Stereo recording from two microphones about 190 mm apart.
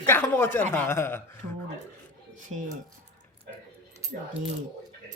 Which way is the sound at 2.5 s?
35° right (ahead or behind).